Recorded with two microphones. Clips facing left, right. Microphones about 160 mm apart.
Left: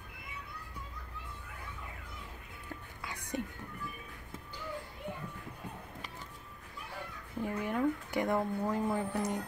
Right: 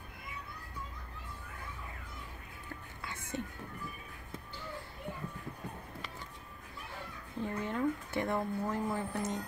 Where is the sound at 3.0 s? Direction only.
15° left (ahead or behind).